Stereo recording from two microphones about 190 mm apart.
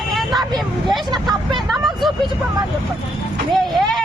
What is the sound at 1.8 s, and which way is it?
Hubbub, centre (ahead or behind).